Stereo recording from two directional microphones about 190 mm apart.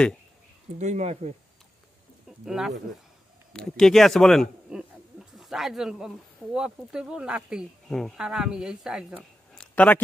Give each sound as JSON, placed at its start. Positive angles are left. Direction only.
{"t": 0.7, "sound": "speech", "side_deg": -40}
{"t": 2.4, "sound": "speech", "side_deg": 0}
{"t": 9.8, "sound": "speech", "side_deg": 10}